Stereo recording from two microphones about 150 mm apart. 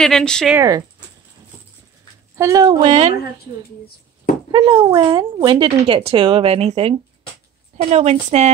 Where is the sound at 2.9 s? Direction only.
45° right (ahead or behind).